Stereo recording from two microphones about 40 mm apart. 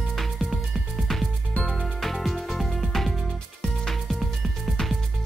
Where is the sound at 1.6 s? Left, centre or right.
Left.